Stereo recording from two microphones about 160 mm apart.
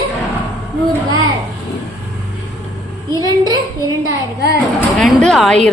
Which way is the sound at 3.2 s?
20° right (ahead or behind).